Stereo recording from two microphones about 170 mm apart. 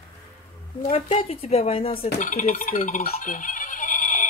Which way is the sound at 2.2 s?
50° left (ahead or behind).